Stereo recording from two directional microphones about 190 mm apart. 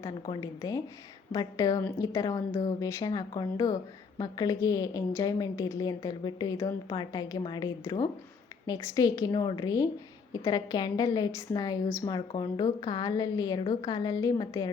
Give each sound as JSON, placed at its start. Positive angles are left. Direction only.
{"t": 0.0, "sound": "a woman's voice", "side_deg": 20}